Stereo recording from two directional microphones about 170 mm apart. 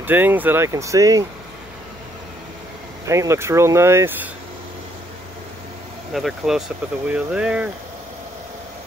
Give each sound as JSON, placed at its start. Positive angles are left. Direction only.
{"t": 0.0, "sound": "speech", "side_deg": -10}
{"t": 3.1, "sound": "speech", "side_deg": -15}
{"t": 6.1, "sound": "speech", "side_deg": 0}